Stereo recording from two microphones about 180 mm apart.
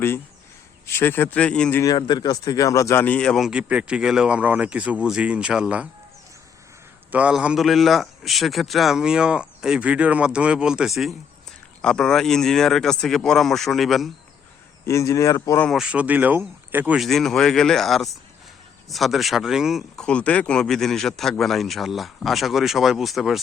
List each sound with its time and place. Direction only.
0.9 s speech: 10° left (ahead or behind)
1.8 s speech: 20° left (ahead or behind); by 5.9 s 5° right (ahead or behind)
7.1 s speech: 5° right (ahead or behind)
14.8 s speech: 15° left (ahead or behind)
15.6 s speech: centre (ahead or behind)